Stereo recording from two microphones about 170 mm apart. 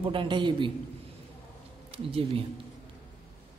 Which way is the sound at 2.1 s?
35° right (ahead or behind).